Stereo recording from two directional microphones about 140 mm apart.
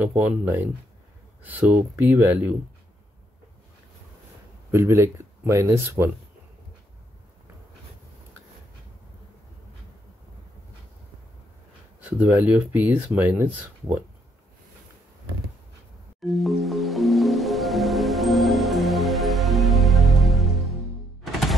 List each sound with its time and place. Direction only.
0.0 s speech: 10° right (ahead or behind)
4.6 s speech: 20° right (ahead or behind)
12.0 s speech: 15° right (ahead or behind)
16.3 s music: centre (ahead or behind)